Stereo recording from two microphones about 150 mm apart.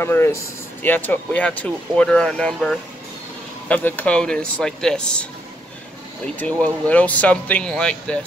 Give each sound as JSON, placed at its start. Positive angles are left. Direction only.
{"t": 0.0, "sound": "speech", "side_deg": 15}
{"t": 6.4, "sound": "speech", "side_deg": 10}